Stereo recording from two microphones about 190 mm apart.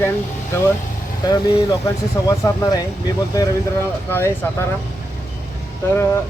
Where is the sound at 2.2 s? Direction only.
15° left (ahead or behind).